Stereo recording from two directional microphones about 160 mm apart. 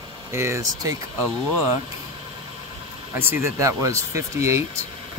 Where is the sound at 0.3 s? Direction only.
15° right (ahead or behind).